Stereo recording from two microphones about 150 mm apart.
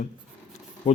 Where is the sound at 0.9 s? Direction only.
35° left (ahead or behind).